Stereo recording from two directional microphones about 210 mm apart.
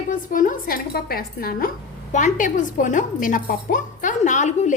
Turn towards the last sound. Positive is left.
turn(degrees=35)  # may be behind; listen again after turning